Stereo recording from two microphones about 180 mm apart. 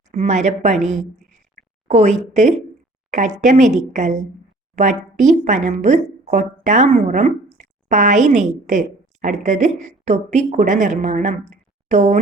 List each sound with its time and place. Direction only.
0.1 s a woman's voice: 40° right (ahead or behind)